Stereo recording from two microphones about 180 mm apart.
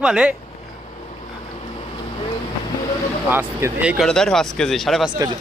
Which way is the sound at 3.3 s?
10° right (ahead or behind).